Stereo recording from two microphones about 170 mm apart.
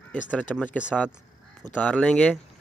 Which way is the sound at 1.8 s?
5° left (ahead or behind).